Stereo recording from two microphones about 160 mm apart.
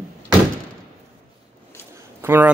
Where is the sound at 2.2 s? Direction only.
15° right (ahead or behind).